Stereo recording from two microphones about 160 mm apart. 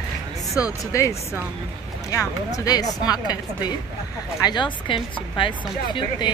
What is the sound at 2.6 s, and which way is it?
A woman's voice, 25° left (ahead or behind).